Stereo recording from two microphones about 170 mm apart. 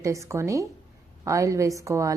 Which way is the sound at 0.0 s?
20° right (ahead or behind).